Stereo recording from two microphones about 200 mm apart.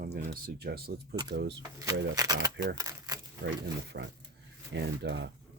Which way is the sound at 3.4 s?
60° right (ahead or behind).